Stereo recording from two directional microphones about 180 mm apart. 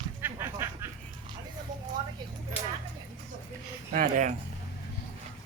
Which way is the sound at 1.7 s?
45° right (ahead or behind).